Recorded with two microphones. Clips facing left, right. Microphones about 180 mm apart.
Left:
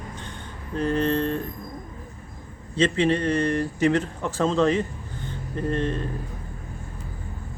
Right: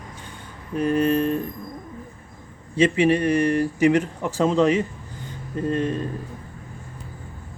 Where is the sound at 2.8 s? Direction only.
10° right (ahead or behind).